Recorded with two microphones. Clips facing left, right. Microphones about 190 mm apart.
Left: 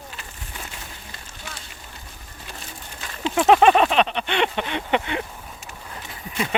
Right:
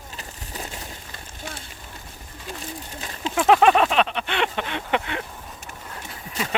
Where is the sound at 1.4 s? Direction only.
50° right (ahead or behind).